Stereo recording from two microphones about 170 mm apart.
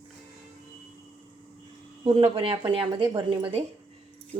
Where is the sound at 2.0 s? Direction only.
35° right (ahead or behind).